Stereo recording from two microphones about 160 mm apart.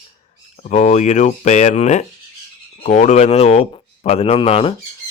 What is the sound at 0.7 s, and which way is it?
Speech, 45° left (ahead or behind).